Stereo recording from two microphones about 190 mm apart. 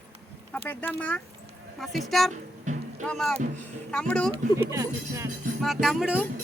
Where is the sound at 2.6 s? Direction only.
40° right (ahead or behind).